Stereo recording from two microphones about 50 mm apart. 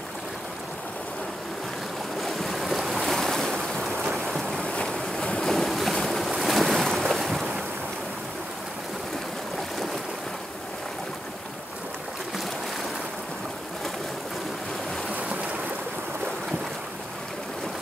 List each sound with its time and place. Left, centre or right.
2.1 s waves: centre
3.1 s waves: centre
4.0 s boat: centre
4.6 s boat: left
5.7 s boat: centre
5.9 s boat: centre
6.4 s waves: centre